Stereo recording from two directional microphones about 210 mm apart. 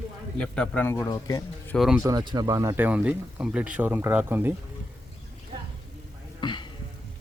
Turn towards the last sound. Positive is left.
turn(degrees=20)  # may be behind; listen again after turning